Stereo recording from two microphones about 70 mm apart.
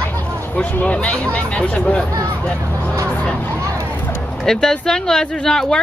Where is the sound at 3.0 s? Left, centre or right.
Centre.